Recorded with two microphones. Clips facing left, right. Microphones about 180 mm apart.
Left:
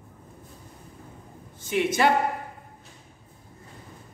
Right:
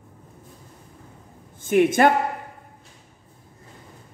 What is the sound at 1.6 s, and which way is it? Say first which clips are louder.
Speech: right 6 dB; 50° right (ahead or behind).